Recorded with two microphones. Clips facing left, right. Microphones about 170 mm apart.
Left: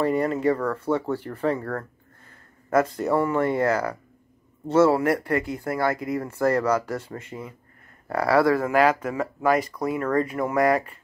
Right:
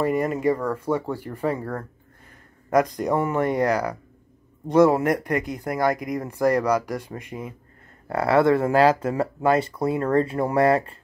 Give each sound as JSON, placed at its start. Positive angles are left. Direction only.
{"t": 0.0, "sound": "speech", "side_deg": -10}